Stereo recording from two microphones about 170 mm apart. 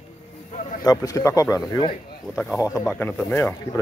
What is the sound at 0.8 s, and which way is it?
Speech, 20° left (ahead or behind).